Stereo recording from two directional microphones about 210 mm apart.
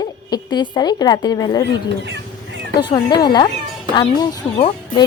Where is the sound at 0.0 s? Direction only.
20° left (ahead or behind).